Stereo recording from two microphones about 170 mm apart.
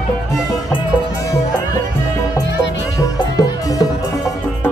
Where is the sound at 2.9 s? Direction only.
20° left (ahead or behind).